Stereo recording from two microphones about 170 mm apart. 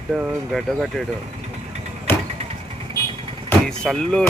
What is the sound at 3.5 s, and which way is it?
Speech, 5° left (ahead or behind).